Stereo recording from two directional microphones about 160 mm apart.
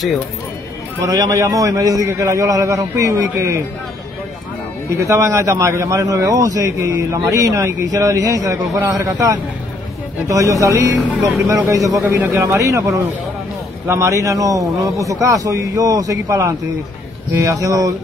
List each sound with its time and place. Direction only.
1.0 s a man's voice: 20° right (ahead or behind)
4.9 s a man's voice: 20° right (ahead or behind)